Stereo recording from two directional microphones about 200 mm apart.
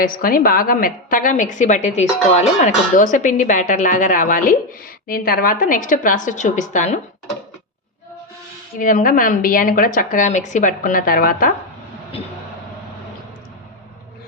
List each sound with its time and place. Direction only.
0.0 s a woman's voice: 45° left (ahead or behind)
8.8 s a woman's voice: 40° left (ahead or behind)